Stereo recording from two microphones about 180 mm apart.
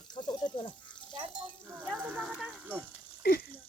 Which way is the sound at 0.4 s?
25° left (ahead or behind).